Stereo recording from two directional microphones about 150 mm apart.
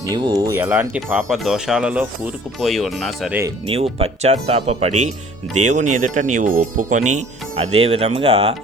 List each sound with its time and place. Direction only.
0.1 s speech: 25° right (ahead or behind); by 2.3 s 10° right (ahead or behind)
2.6 s speech: centre (ahead or behind)
3.7 s speech: 40° right (ahead or behind)